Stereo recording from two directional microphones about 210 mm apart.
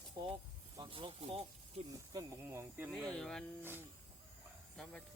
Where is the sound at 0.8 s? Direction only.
25° right (ahead or behind).